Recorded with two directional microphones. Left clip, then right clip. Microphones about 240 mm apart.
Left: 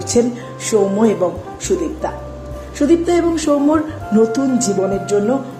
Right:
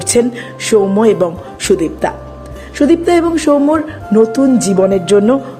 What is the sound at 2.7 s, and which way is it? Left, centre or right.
Speech, right.